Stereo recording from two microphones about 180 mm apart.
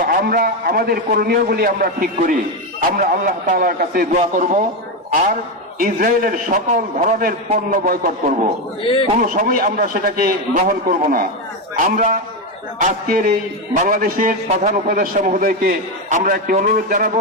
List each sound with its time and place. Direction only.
0.0 s a man's voice: 55° right (ahead or behind)
5.8 s a man's voice: 50° right (ahead or behind)
8.8 s a man's voice: 30° left (ahead or behind)
9.1 s a man's voice: 45° right (ahead or behind)